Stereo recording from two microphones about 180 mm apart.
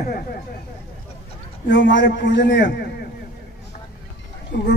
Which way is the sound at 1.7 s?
80° left.